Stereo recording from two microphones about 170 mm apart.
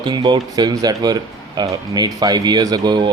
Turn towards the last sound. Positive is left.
turn(degrees=-25)  # may be behind; listen again after turning